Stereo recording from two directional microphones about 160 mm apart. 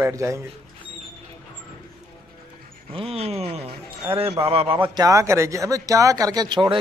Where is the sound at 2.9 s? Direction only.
35° right (ahead or behind).